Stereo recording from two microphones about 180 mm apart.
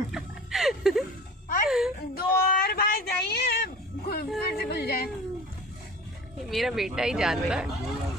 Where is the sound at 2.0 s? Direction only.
55° left (ahead or behind).